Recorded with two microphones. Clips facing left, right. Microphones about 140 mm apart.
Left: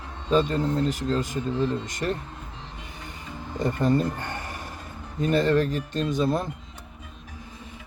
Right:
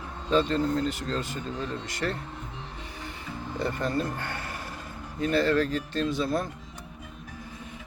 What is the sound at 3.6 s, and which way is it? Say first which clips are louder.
Speech: left 6 dB; 20° left (ahead or behind).